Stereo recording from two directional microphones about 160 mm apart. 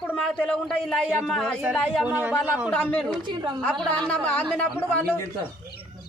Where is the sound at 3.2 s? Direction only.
30° right (ahead or behind).